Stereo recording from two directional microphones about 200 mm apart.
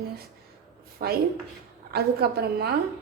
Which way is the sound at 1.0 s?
45° right (ahead or behind).